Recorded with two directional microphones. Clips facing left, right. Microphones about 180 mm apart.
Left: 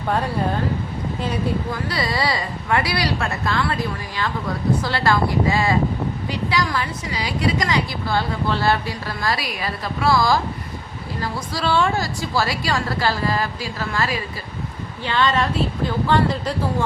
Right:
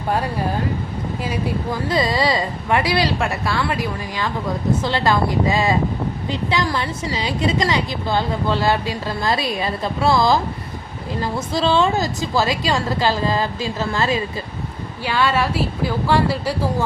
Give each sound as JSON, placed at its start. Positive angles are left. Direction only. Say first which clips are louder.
{"t": 1.9, "sound": "a woman's voice", "louder": "right 5 dB", "side_deg": -20}
{"t": 15.0, "sound": "a woman's voice", "louder": "right 1 dB", "side_deg": -10}